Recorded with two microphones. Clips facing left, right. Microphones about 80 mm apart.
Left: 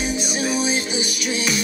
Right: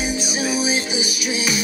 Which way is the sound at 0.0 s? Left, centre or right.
Centre.